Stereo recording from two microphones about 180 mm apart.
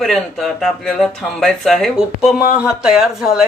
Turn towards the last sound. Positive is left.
turn(degrees=0)  # may be behind; listen again after turning